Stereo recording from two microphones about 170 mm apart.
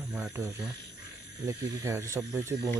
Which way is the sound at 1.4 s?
20° right (ahead or behind).